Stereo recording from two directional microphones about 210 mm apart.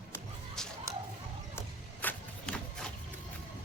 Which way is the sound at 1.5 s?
10° left (ahead or behind).